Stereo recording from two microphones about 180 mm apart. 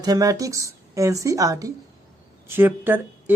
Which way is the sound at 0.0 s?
20° right (ahead or behind).